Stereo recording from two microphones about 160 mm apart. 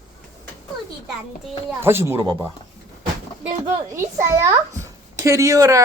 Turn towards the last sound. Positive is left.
turn(degrees=-20)  # may be behind; listen again after turning